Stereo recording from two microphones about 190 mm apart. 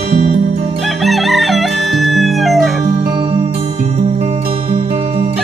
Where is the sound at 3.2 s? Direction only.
30° right (ahead or behind).